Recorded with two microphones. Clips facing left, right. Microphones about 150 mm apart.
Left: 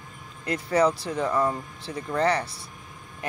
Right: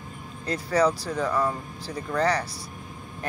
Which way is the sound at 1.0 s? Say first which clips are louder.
Left 1 dB; 30° left (ahead or behind).